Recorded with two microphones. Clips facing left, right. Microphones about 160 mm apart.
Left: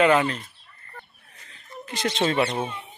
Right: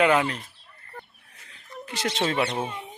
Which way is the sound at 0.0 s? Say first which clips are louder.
Left 2 dB; 10° right (ahead or behind).